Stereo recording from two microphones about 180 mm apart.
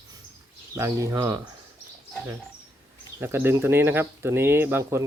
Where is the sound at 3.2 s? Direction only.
15° right (ahead or behind).